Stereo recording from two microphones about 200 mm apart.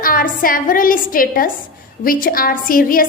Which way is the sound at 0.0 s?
45° left (ahead or behind).